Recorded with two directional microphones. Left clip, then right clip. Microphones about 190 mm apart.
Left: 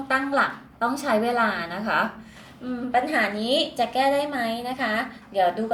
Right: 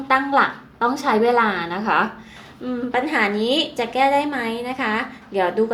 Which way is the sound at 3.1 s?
45° right (ahead or behind).